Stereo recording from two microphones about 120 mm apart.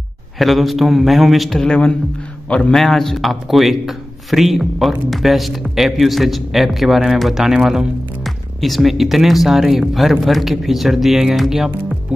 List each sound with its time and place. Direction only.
0.4 s a man's voice: centre (ahead or behind)